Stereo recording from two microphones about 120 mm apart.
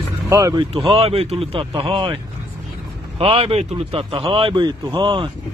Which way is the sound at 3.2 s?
55° right (ahead or behind).